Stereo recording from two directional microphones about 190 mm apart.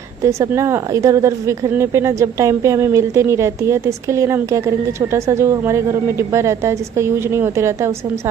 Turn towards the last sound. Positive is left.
turn(degrees=-15)  # may be behind; listen again after turning